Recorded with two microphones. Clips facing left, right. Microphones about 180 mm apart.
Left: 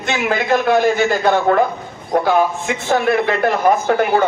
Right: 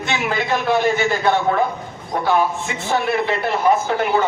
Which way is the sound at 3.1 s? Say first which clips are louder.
Left 4 dB; 45° left (ahead or behind).